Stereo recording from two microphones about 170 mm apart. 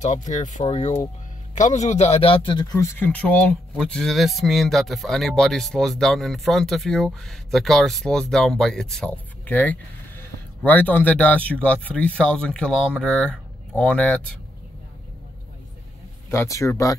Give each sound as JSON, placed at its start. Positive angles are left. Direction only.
{"t": 0.0, "sound": "speech", "side_deg": 45}
{"t": 3.0, "sound": "speech", "side_deg": 10}
{"t": 16.3, "sound": "speech", "side_deg": 20}